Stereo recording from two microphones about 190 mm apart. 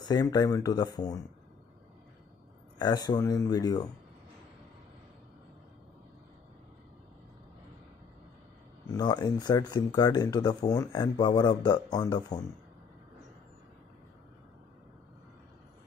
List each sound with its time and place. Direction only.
0.0 s speech: 20° left (ahead or behind)
2.8 s speech: 20° left (ahead or behind)
8.9 s speech: 20° left (ahead or behind)